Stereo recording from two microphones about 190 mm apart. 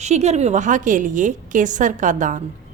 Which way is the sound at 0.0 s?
35° right (ahead or behind).